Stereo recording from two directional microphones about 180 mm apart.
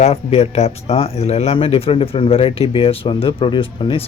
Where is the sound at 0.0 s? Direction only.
35° left (ahead or behind).